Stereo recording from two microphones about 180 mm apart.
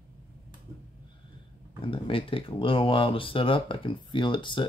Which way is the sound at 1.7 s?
30° left (ahead or behind).